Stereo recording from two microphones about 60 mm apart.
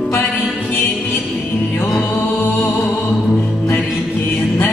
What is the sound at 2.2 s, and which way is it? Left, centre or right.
Music, left.